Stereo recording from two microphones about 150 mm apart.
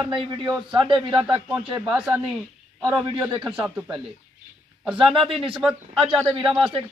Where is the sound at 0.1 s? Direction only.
30° right (ahead or behind).